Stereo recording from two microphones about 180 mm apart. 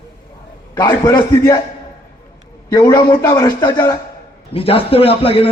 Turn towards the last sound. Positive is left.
turn(degrees=30)  # may be behind; listen again after turning